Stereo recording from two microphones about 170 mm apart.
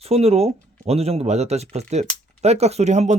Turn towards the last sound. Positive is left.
turn(degrees=-40)  # may be behind; listen again after turning